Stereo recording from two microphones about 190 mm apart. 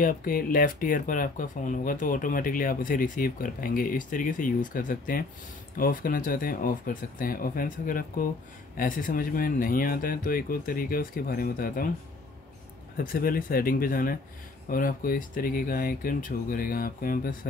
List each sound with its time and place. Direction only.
0.0 s speech: 50° left (ahead or behind)
12.9 s speech: 50° left (ahead or behind)